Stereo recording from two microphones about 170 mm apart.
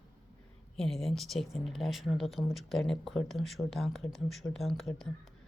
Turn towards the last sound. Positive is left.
turn(degrees=0)  # may be behind; listen again after turning